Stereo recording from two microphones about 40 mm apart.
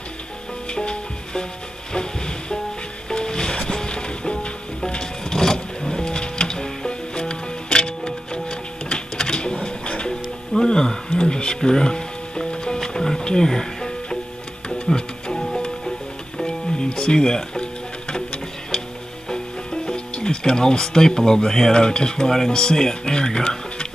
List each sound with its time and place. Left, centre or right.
0.7 s music: left
19.2 s speech: centre